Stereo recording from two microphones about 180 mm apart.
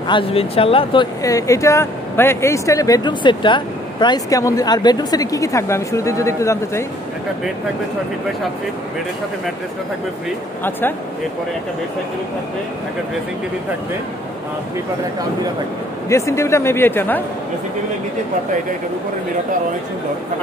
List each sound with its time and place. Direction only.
0.1 s speech: 30° left (ahead or behind)
1.2 s speech: 20° left (ahead or behind)
10.6 s speech: 10° left (ahead or behind)
16.1 s speech: 15° left (ahead or behind)